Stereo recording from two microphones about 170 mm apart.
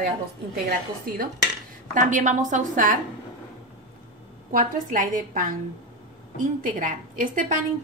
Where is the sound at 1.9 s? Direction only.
45° right (ahead or behind).